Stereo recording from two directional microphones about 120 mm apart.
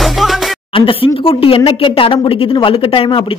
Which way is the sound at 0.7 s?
50° left (ahead or behind).